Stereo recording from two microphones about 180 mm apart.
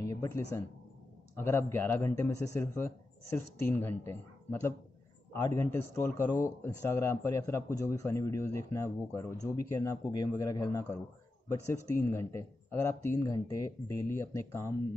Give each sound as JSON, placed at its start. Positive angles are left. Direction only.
{"t": 0.0, "sound": "a man's voice", "side_deg": 15}